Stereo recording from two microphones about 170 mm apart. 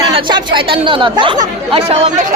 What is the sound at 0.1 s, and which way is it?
Speech, 30° right (ahead or behind).